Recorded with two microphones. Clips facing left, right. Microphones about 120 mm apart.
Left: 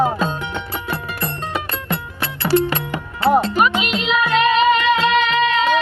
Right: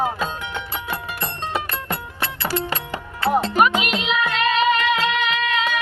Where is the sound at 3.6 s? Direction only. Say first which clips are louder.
Even; 50° right (ahead or behind).